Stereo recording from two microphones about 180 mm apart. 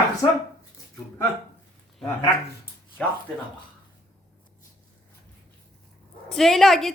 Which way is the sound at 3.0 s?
5° left (ahead or behind).